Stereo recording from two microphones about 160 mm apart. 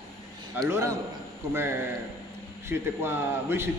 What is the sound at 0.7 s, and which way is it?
Speech, 15° right (ahead or behind).